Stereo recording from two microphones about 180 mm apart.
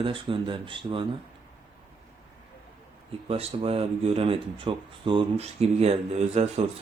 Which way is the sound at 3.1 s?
35° right (ahead or behind).